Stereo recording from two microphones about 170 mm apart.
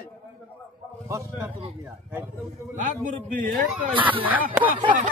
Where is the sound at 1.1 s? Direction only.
15° right (ahead or behind).